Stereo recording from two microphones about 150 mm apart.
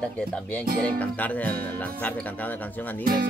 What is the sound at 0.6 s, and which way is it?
Speech, 75° right (ahead or behind).